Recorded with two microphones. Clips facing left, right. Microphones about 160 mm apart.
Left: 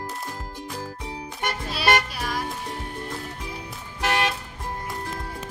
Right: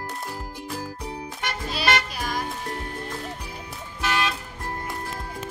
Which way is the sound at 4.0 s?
65° left (ahead or behind).